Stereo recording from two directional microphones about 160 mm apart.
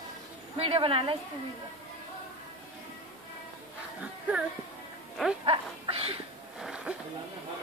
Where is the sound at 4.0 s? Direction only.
10° right (ahead or behind).